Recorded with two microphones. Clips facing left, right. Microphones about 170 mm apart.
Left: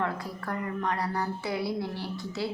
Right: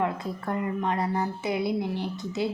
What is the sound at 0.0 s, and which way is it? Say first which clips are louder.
A woman's voice: right 3 dB; 20° right (ahead or behind).